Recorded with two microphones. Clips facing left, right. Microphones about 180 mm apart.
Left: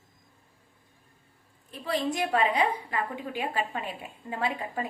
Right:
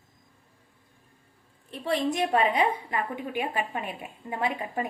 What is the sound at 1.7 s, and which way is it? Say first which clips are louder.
A woman's voice: right 2 dB; 25° right (ahead or behind).